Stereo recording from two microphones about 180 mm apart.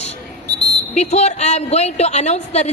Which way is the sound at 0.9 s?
40° left (ahead or behind).